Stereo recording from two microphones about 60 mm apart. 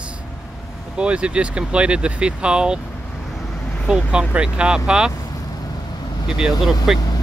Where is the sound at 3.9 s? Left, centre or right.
Centre.